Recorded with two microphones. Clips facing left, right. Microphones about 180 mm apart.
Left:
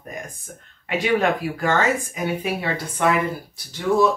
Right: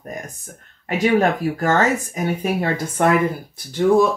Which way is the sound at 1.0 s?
45° right (ahead or behind).